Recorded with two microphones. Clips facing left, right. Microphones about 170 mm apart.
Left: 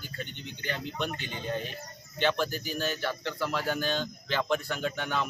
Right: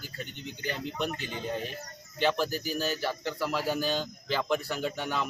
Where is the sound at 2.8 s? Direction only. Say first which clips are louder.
Left 1 dB; 5° right (ahead or behind).